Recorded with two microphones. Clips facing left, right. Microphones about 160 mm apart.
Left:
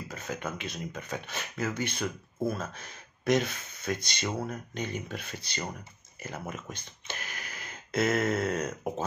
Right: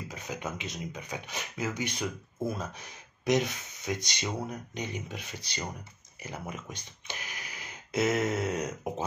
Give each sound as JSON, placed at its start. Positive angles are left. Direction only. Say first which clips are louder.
{"t": 0.1, "sound": "speech", "louder": "left 2 dB", "side_deg": -15}